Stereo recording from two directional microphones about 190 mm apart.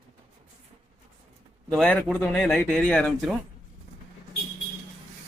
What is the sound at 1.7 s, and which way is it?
Speech, 5° left (ahead or behind).